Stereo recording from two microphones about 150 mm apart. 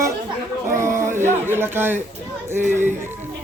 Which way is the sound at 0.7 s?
20° right (ahead or behind).